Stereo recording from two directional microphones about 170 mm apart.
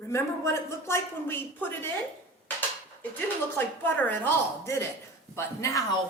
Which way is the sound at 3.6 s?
10° left (ahead or behind).